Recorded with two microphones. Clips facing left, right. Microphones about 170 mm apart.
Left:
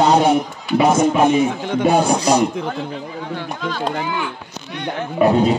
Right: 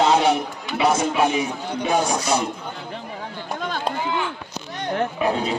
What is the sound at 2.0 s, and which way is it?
Speech, 35° left (ahead or behind).